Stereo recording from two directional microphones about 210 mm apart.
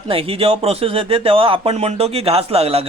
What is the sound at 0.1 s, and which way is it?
Speech, 25° right (ahead or behind).